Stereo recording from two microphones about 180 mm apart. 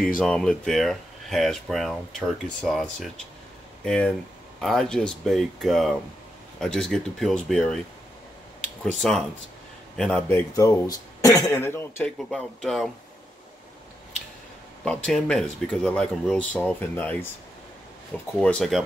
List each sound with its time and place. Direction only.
0.2 s speech: 5° left (ahead or behind)
8.5 s a sound: 5° left (ahead or behind)
9.9 s a man's voice: 5° left (ahead or behind)
10.2 s speech: 15° left (ahead or behind)
12.3 s speech: centre (ahead or behind)
14.9 s speech: 5° left (ahead or behind)
18.4 s speech: 5° left (ahead or behind)